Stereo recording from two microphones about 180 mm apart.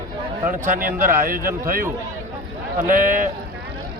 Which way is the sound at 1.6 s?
55° right (ahead or behind).